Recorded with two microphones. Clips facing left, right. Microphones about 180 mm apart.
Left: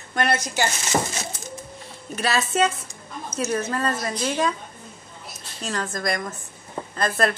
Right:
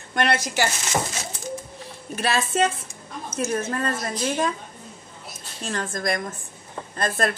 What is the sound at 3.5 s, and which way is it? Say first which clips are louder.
Speech: left 2 dB; 30° right (ahead or behind).